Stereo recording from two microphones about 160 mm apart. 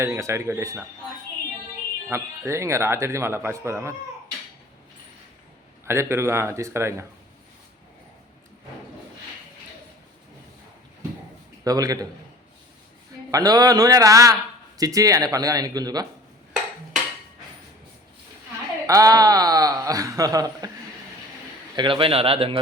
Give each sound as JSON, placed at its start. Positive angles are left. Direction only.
{"t": 0.0, "sound": "speech", "side_deg": -15}
{"t": 2.0, "sound": "speech", "side_deg": -15}
{"t": 5.8, "sound": "speech", "side_deg": -15}
{"t": 11.6, "sound": "a man's voice", "side_deg": -20}
{"t": 13.3, "sound": "a man's voice", "side_deg": -25}
{"t": 18.9, "sound": "a man's voice", "side_deg": -20}
{"t": 21.8, "sound": "speech", "side_deg": -35}